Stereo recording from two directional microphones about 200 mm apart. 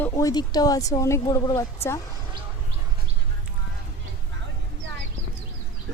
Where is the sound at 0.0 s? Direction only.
15° left (ahead or behind).